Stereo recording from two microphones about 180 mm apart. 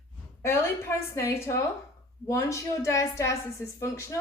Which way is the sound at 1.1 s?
15° left (ahead or behind).